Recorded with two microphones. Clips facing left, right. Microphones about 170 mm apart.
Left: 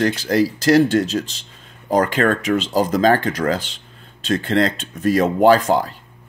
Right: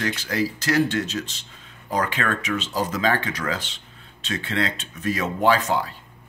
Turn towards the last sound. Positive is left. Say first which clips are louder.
# left 7 dB
turn(degrees=40)  # may be behind; listen again after turning